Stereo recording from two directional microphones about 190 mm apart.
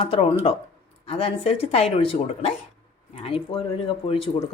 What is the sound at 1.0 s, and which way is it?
A woman's voice, 30° left (ahead or behind).